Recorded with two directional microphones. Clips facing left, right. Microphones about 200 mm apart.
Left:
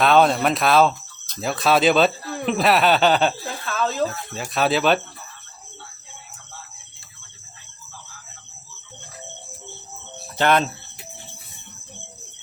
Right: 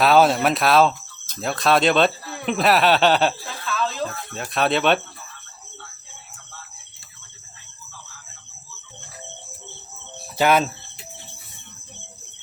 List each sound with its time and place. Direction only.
0.0 s speech: 5° right (ahead or behind)
3.7 s a sound: 45° left (ahead or behind)
4.4 s speech: centre (ahead or behind)
10.3 s cricket: 5° right (ahead or behind)